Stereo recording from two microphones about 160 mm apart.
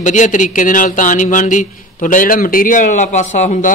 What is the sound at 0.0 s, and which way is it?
Speech, 50° left (ahead or behind).